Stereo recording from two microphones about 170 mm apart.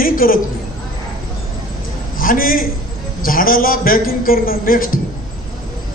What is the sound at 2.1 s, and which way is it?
A man's voice, 55° left (ahead or behind).